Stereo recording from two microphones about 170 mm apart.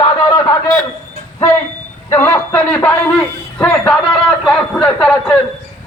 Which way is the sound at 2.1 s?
15° left (ahead or behind).